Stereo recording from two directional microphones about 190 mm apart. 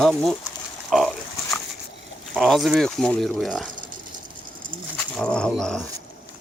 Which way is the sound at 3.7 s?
45° right (ahead or behind).